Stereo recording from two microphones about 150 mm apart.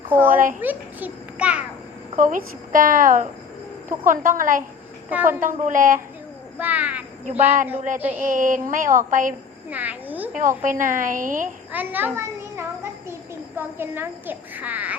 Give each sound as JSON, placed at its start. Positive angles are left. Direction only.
{"t": 0.1, "sound": "a child's voice", "side_deg": -15}
{"t": 2.1, "sound": "a woman's voice", "side_deg": -60}
{"t": 5.1, "sound": "a child's voice", "side_deg": -15}
{"t": 5.4, "sound": "a woman's voice", "side_deg": -60}
{"t": 6.6, "sound": "a child's voice", "side_deg": -10}
{"t": 8.3, "sound": "a woman's voice", "side_deg": -65}
{"t": 9.6, "sound": "a child's voice", "side_deg": -10}
{"t": 10.6, "sound": "a woman's voice", "side_deg": -60}
{"t": 11.7, "sound": "a sound", "side_deg": -10}
{"t": 13.6, "sound": "a child's voice", "side_deg": -15}